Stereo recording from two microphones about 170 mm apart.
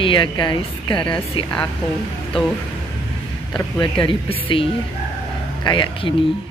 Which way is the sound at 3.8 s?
30° left (ahead or behind).